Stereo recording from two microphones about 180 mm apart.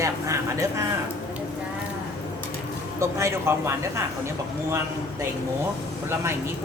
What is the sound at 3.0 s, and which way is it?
A man's voice, 15° right (ahead or behind).